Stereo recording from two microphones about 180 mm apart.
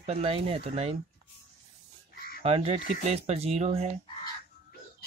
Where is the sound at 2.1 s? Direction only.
55° left (ahead or behind).